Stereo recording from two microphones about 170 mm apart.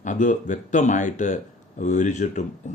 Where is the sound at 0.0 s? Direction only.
45° left (ahead or behind).